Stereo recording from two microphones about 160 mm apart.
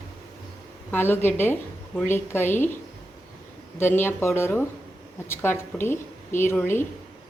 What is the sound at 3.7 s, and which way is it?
A woman's voice, 15° left (ahead or behind).